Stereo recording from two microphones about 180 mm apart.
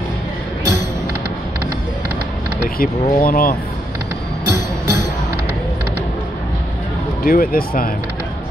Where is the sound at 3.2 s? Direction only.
55° left (ahead or behind).